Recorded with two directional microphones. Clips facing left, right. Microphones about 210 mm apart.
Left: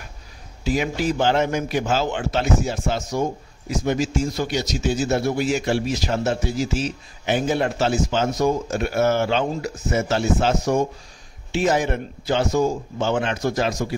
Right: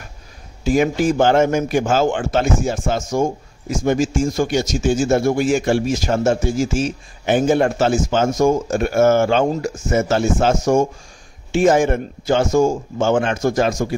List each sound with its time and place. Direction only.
0.7 s a man's voice: 50° right (ahead or behind)